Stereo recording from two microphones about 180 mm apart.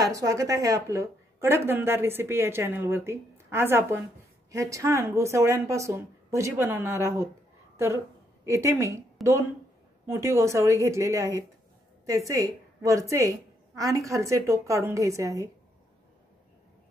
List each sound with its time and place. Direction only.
0.0 s a woman's voice: 20° right (ahead or behind)
7.7 s a sound: 15° right (ahead or behind)
8.5 s a woman's voice: 15° right (ahead or behind)